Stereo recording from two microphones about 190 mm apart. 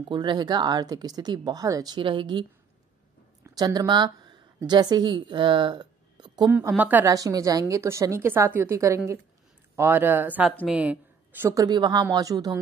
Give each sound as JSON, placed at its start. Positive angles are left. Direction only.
{"t": 0.1, "sound": "speech", "side_deg": -25}
{"t": 3.4, "sound": "a woman's voice", "side_deg": -20}
{"t": 6.7, "sound": "a woman's voice", "side_deg": -10}